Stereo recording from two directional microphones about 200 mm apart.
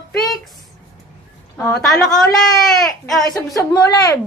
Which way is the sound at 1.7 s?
Centre (ahead or behind).